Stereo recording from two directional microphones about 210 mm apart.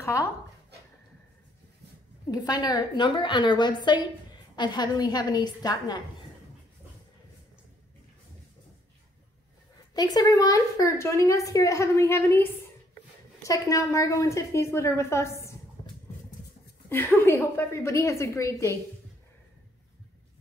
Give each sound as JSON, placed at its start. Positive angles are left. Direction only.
{"t": 2.3, "sound": "a woman's voice", "side_deg": 20}
{"t": 9.9, "sound": "a woman's voice", "side_deg": 15}
{"t": 16.9, "sound": "a woman's voice", "side_deg": 10}